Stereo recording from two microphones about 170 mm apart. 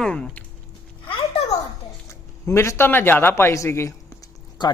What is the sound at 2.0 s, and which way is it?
Speech, 15° left (ahead or behind).